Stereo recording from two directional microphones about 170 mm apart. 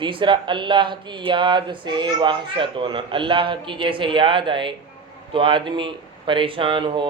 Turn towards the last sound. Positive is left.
turn(degrees=-30)  # may be behind; listen again after turning